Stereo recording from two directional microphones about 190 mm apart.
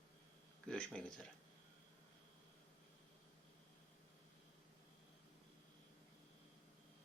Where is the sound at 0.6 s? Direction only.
5° left (ahead or behind).